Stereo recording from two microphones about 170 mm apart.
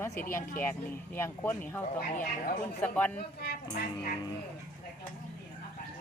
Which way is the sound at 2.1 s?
55° left (ahead or behind).